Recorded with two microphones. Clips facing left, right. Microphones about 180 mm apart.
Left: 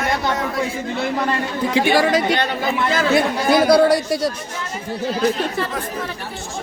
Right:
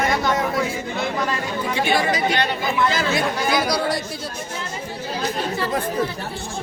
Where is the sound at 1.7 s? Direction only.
90° left.